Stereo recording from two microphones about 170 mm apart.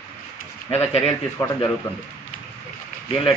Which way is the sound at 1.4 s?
15° left (ahead or behind).